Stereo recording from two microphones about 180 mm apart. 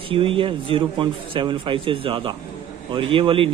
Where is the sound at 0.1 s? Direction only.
30° right (ahead or behind).